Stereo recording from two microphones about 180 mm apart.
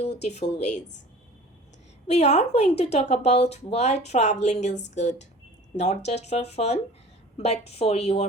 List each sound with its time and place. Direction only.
0.2 s a woman's voice: 40° left (ahead or behind)
2.0 s a woman's voice: 40° left (ahead or behind)